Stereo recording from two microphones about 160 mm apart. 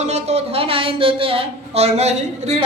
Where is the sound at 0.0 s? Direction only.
40° right (ahead or behind).